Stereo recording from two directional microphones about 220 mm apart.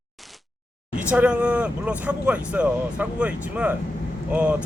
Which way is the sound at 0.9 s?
5° right (ahead or behind).